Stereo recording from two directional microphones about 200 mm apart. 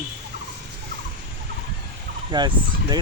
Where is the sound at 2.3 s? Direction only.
20° right (ahead or behind).